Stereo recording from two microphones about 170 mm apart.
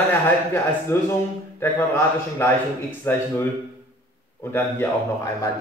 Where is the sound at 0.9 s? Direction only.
15° left (ahead or behind).